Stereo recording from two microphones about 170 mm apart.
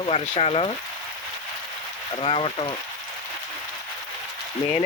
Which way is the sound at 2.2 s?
30° left (ahead or behind).